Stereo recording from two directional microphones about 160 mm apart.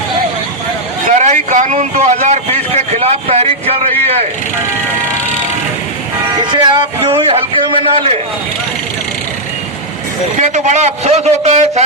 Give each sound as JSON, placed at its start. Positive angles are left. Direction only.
{"t": 1.2, "sound": "vehicle", "side_deg": -50}
{"t": 6.4, "sound": "a man's voice", "side_deg": -30}
{"t": 10.3, "sound": "a man's voice", "side_deg": -50}